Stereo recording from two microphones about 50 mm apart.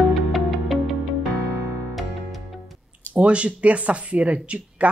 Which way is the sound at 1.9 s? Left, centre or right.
Centre.